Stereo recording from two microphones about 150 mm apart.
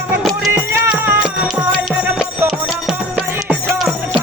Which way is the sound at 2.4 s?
Centre (ahead or behind).